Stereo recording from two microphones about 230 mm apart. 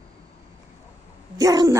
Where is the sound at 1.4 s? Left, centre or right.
Centre.